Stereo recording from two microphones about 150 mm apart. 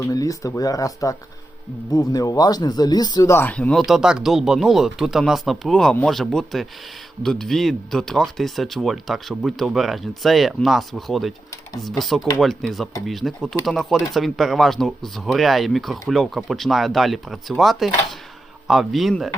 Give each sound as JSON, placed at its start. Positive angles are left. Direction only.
{"t": 0.0, "sound": "speech", "side_deg": 20}